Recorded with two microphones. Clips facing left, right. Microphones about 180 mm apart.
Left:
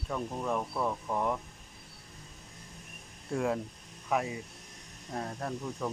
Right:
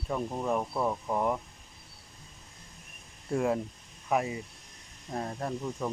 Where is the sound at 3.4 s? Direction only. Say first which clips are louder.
Right 3 dB; 5° right (ahead or behind).